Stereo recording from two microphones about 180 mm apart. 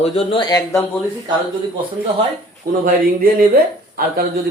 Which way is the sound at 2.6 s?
55° right (ahead or behind).